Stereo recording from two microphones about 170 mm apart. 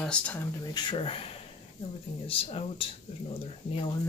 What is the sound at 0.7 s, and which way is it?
Speech, 30° left (ahead or behind).